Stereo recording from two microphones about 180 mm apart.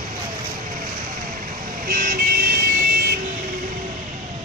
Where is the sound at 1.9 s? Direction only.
55° right (ahead or behind).